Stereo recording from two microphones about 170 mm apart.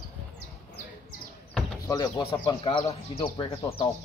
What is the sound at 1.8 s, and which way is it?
Speech, 20° left (ahead or behind).